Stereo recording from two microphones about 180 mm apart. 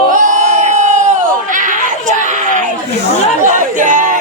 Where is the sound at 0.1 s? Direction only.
45° right (ahead or behind).